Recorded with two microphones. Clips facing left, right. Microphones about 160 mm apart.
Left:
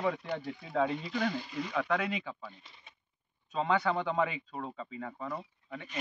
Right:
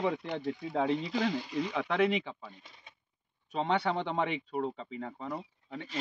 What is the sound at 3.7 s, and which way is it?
Speech, 25° right (ahead or behind).